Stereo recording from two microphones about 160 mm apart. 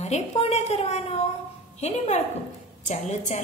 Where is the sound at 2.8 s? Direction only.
50° left (ahead or behind).